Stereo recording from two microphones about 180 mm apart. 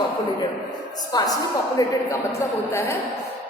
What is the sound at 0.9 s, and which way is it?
A woman's voice, 20° left (ahead or behind).